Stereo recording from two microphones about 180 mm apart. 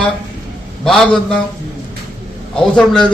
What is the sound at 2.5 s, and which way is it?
Speech, 5° left (ahead or behind).